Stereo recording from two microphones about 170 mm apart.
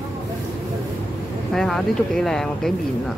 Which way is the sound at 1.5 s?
Centre (ahead or behind).